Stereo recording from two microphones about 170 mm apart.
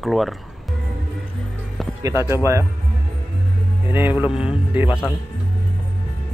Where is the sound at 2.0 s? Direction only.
15° right (ahead or behind).